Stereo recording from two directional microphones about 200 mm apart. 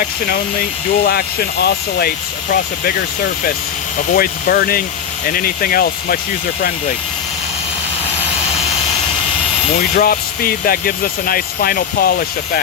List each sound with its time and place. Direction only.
1.0 s speech: 50° left (ahead or behind)
3.9 s speech: 45° left (ahead or behind)
9.9 s speech: 45° left (ahead or behind)